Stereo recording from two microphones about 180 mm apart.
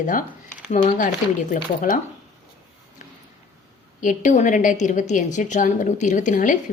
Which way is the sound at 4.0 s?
45° left (ahead or behind).